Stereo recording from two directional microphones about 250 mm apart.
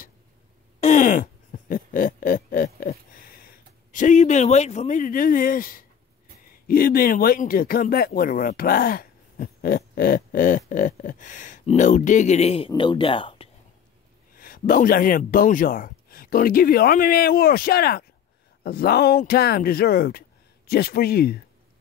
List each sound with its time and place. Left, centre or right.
0.7 s a sound: left
6.5 s speech: left
14.3 s speech: left